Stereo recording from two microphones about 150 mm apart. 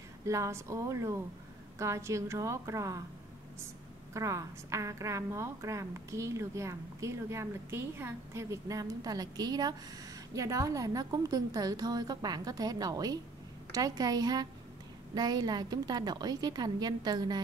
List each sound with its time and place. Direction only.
0.2 s a woman's voice: 20° right (ahead or behind)
4.1 s a woman's voice: 20° right (ahead or behind)